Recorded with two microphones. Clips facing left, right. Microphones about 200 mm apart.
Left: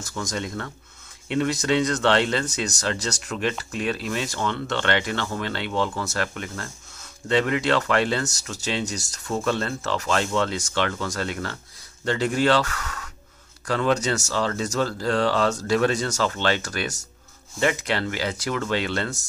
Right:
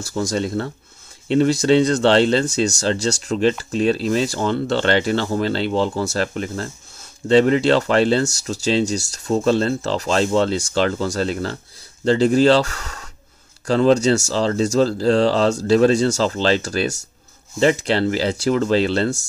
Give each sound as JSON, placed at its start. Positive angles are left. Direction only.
{"t": 0.0, "sound": "speech", "side_deg": -30}